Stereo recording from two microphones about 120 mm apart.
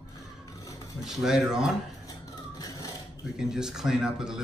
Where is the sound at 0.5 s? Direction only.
25° left (ahead or behind).